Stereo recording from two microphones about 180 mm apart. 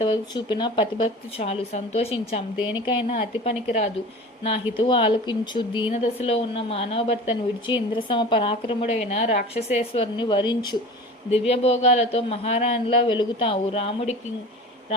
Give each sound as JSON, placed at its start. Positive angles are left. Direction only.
{"t": 0.0, "sound": "a woman's voice", "side_deg": 25}
{"t": 4.8, "sound": "speech", "side_deg": 30}
{"t": 5.9, "sound": "a woman's voice", "side_deg": 35}
{"t": 11.3, "sound": "a woman's voice", "side_deg": 35}